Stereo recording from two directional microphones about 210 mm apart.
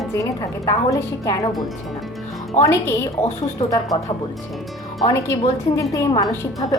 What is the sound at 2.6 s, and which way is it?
Speech, 10° left (ahead or behind).